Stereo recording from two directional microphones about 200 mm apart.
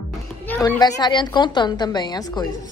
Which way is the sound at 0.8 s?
20° left (ahead or behind).